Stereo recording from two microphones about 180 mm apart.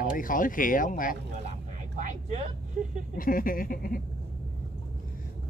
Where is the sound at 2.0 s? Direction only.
40° right (ahead or behind).